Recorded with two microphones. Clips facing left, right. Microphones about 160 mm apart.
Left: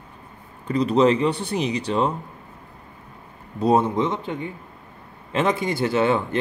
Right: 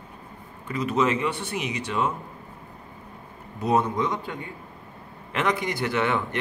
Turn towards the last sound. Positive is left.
turn(degrees=25)  # may be behind; listen again after turning